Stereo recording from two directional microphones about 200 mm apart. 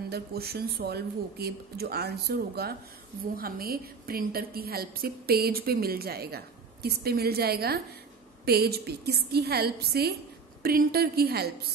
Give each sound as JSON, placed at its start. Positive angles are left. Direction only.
{"t": 0.1, "sound": "a woman's voice", "side_deg": -50}